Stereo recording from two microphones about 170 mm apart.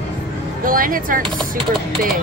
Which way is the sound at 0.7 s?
55° right (ahead or behind).